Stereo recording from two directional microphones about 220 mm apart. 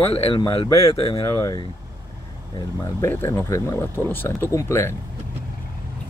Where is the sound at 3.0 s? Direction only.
10° left (ahead or behind).